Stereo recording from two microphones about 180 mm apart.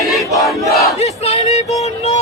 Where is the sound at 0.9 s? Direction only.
35° left (ahead or behind).